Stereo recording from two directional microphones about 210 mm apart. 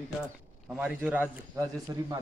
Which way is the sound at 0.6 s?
5° right (ahead or behind).